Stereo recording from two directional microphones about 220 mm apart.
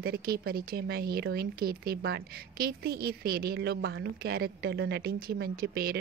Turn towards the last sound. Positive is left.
turn(degrees=-45)  # may be behind; listen again after turning